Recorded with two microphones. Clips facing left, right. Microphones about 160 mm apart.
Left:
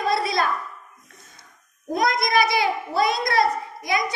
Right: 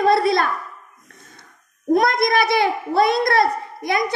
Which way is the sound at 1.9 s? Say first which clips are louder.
Right 4 dB; 55° right (ahead or behind).